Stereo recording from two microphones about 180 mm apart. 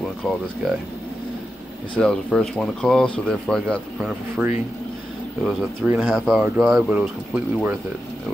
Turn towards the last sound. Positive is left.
turn(degrees=-5)  # may be behind; listen again after turning